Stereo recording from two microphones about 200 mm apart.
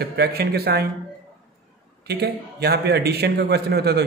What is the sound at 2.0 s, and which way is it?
A man's voice, 55° right (ahead or behind).